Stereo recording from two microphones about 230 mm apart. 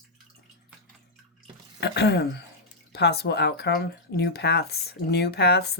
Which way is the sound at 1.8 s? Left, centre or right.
Left.